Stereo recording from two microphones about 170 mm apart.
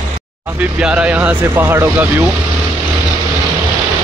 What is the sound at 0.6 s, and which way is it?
Speech, 5° right (ahead or behind).